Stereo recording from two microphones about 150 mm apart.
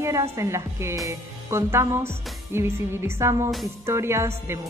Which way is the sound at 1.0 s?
15° right (ahead or behind).